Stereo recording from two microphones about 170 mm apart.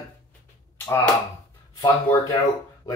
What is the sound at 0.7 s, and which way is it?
Speech, 15° left (ahead or behind).